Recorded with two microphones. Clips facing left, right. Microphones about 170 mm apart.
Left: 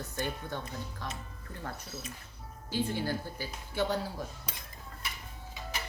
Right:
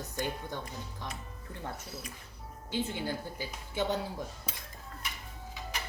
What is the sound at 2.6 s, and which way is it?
Speech, 20° right (ahead or behind).